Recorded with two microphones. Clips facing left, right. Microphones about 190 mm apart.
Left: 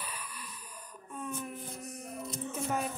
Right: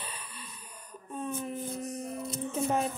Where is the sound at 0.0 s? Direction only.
25° right (ahead or behind).